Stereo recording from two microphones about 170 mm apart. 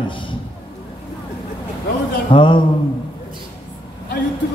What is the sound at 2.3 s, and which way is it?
Speech, 30° left (ahead or behind).